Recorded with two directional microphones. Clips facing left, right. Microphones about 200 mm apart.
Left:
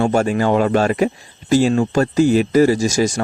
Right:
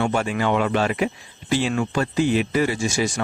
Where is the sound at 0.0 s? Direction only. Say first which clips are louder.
Left 6 dB; 40° left (ahead or behind).